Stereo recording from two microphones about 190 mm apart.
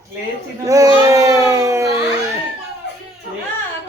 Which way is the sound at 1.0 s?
15° right (ahead or behind).